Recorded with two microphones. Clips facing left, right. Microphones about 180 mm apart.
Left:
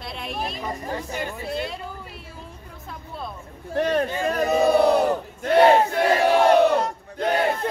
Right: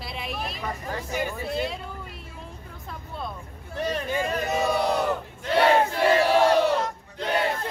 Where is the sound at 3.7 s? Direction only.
60° left (ahead or behind).